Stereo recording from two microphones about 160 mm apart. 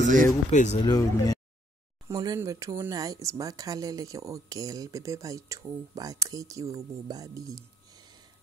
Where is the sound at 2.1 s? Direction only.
20° right (ahead or behind).